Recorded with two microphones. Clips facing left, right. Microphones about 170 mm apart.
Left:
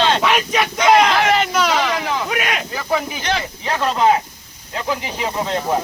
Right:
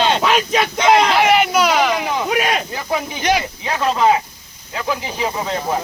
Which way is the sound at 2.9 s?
10° right (ahead or behind).